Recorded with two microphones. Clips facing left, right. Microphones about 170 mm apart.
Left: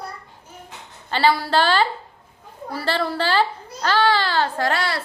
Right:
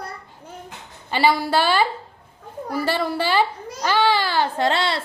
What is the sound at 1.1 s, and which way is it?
A woman's voice, 10° right (ahead or behind).